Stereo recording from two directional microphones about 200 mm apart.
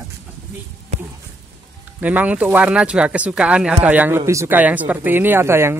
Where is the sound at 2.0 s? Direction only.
5° right (ahead or behind).